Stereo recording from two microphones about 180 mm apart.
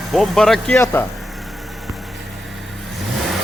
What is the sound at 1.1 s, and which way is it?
Vehicle, centre (ahead or behind).